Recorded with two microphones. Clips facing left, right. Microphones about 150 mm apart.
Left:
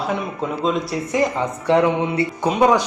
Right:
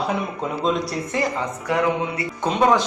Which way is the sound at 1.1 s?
20° left (ahead or behind).